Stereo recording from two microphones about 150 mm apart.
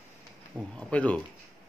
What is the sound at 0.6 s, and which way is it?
Speech, 5° left (ahead or behind).